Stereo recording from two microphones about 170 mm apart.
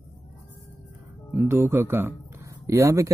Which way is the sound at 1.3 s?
15° right (ahead or behind).